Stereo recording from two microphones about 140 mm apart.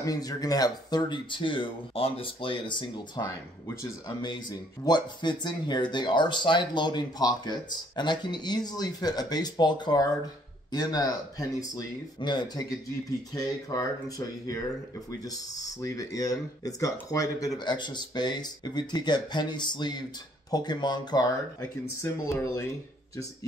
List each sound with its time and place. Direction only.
0.0 s speech: 25° left (ahead or behind)
15.8 s speech: 25° left (ahead or behind)